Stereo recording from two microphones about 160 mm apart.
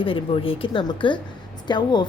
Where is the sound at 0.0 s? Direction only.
35° left (ahead or behind).